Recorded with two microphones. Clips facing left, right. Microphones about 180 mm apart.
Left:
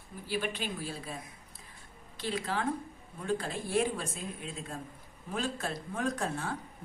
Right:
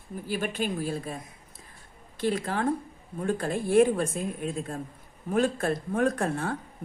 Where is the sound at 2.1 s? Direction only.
50° right (ahead or behind).